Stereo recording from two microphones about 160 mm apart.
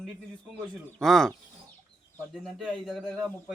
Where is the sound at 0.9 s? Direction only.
5° left (ahead or behind).